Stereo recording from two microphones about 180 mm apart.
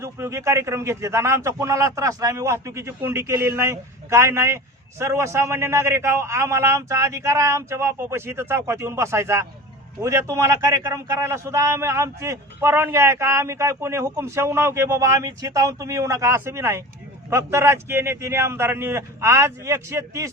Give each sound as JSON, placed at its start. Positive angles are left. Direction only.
{"t": 0.0, "sound": "a man's voice", "side_deg": -15}